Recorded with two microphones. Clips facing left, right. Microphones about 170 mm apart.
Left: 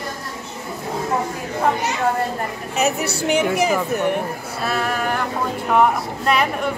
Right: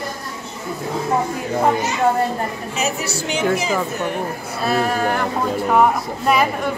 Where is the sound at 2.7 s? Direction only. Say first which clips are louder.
Left 5 dB; 60° left (ahead or behind).